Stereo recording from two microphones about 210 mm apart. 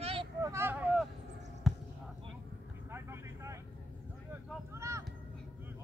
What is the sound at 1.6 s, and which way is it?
Basketball bounce, centre (ahead or behind).